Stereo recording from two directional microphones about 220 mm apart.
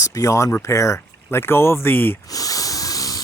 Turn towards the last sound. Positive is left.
turn(degrees=15)  # may be behind; listen again after turning